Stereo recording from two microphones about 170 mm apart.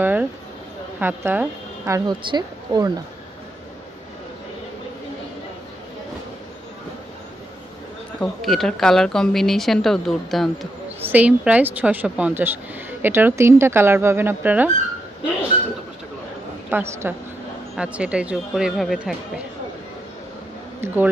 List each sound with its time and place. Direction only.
0.0 s a sound: 10° right (ahead or behind)
0.9 s a woman's voice: 10° right (ahead or behind)
8.2 s speech: centre (ahead or behind)
11.0 s speech: 10° right (ahead or behind)
16.7 s speech: 15° right (ahead or behind)
20.8 s speech: 10° right (ahead or behind)